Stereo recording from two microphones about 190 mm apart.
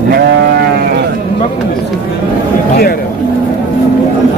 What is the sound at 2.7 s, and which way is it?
Speech, 50° left (ahead or behind).